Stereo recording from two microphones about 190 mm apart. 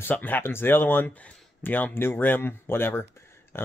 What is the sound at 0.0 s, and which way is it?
Speech, 10° left (ahead or behind).